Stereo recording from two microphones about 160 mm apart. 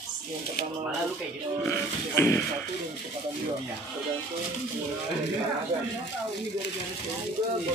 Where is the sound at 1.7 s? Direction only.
15° left (ahead or behind).